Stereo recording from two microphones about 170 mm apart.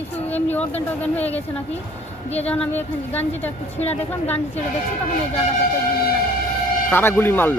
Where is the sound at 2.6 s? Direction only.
10° left (ahead or behind).